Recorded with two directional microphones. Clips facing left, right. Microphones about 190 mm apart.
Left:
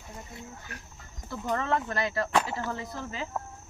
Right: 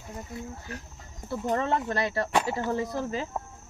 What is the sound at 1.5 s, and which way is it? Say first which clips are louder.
Speech: right 2 dB; 25° right (ahead or behind).